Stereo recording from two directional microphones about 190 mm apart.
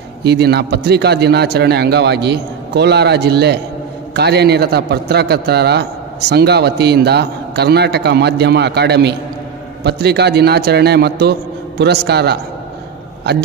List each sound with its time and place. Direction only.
0.2 s a man's voice: 60° right (ahead or behind)